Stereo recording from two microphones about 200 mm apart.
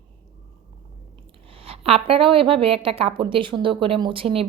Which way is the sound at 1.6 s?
30° right (ahead or behind).